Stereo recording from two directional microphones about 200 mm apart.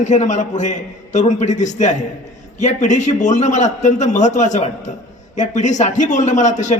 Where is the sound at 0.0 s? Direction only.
35° left (ahead or behind).